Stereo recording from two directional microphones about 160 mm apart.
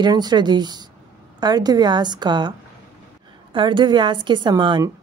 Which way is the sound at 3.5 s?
30° right (ahead or behind).